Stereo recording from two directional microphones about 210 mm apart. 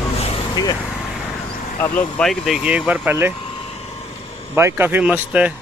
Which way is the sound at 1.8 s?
5° left (ahead or behind).